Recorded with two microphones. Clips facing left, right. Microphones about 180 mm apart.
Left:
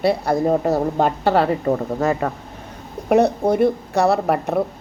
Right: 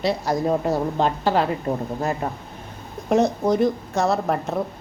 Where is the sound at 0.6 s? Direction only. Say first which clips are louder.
Left 3 dB; 45° left (ahead or behind); by 2.3 s 80° left.